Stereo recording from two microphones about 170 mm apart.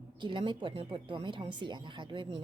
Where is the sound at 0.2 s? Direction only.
30° right (ahead or behind).